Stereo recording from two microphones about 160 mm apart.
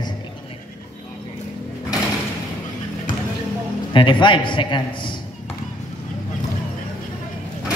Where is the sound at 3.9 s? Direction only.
30° left (ahead or behind).